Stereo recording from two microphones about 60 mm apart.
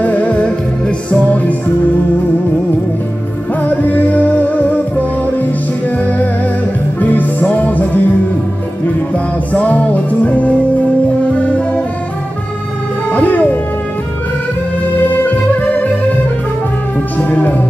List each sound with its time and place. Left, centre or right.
0.0 s music: left
3.6 s music: left
7.0 s music: left
9.1 s music: left
13.1 s music: left
15.1 s music: left
17.2 s music: left